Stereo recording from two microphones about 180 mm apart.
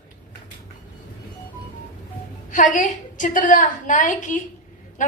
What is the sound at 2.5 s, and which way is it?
A woman's voice, 45° left (ahead or behind).